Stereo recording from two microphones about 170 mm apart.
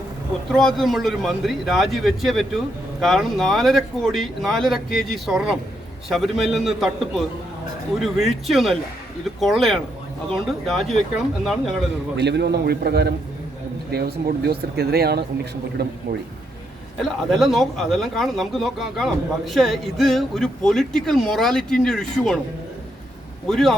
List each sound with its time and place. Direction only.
0.5 s speech: 5° left (ahead or behind)
12.1 s speech: 85° right
17.0 s speech: centre (ahead or behind)
23.5 s speech: centre (ahead or behind)